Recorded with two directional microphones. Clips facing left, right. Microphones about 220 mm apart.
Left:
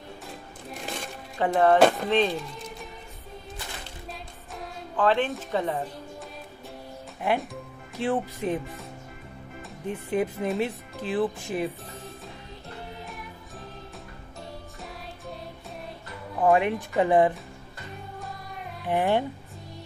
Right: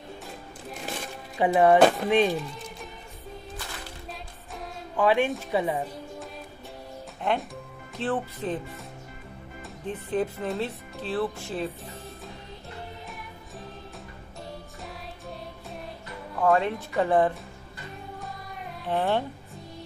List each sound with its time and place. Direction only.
0.7 s music: centre (ahead or behind)
1.4 s a woman's voice: 10° right (ahead or behind)
1.8 s speech: centre (ahead or behind)
2.0 s a woman's voice: 10° right (ahead or behind)
2.3 s music: centre (ahead or behind)
4.9 s a woman's voice: 10° right (ahead or behind)
7.2 s speech: 10° left (ahead or behind)
9.8 s speech: 15° left (ahead or behind)
16.3 s speech: 15° left (ahead or behind)
18.2 s music: centre (ahead or behind)
18.9 s speech: 15° left (ahead or behind)